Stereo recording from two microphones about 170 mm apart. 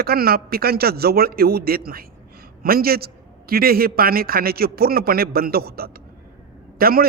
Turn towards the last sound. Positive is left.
turn(degrees=-60)  # may be behind; listen again after turning